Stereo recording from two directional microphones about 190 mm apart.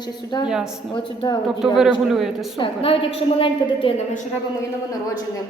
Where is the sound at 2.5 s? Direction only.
30° left (ahead or behind).